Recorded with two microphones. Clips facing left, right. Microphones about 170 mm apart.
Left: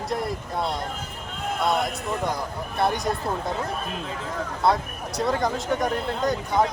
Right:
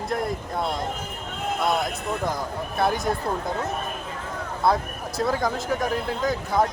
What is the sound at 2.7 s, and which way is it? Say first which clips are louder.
Speech: even; centre (ahead or behind).